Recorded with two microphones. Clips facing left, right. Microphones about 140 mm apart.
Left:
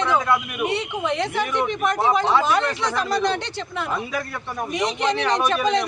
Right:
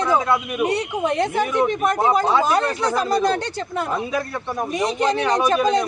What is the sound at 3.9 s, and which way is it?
Speech, 30° right (ahead or behind).